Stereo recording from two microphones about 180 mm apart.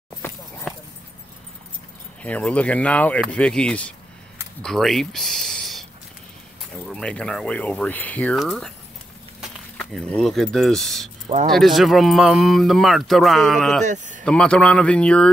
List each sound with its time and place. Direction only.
0.2 s clip-clop: 10° left (ahead or behind)
2.2 s speech: 5° left (ahead or behind)
6.9 s speech: 5° left (ahead or behind)
13.8 s speech: 45° right (ahead or behind)
14.2 s speech: 5° left (ahead or behind)